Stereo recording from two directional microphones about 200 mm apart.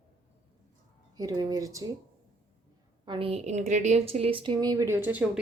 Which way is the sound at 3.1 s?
30° right (ahead or behind).